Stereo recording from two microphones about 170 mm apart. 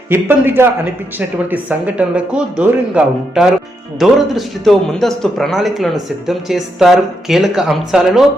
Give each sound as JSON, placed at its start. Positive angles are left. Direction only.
{"t": 0.1, "sound": "speech", "side_deg": -10}
{"t": 2.0, "sound": "a man's voice", "side_deg": -5}